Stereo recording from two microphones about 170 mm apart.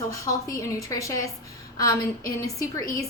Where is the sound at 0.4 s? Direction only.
20° left (ahead or behind).